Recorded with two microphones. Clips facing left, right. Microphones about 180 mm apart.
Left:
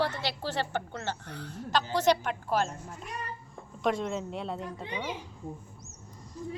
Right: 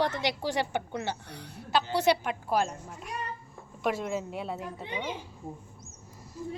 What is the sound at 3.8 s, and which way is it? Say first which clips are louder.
A woman's voice: left 1 dB; 5° right (ahead or behind).